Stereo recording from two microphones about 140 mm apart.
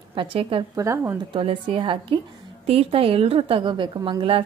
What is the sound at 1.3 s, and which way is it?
A woman's voice, 40° right (ahead or behind).